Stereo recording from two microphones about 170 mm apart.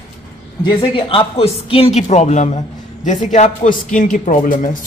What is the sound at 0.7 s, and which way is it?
Speech, 30° left (ahead or behind).